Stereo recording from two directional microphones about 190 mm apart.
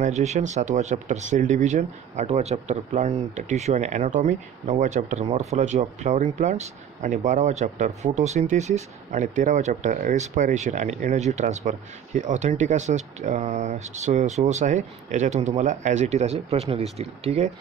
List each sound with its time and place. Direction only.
0.0 s speech: 35° right (ahead or behind)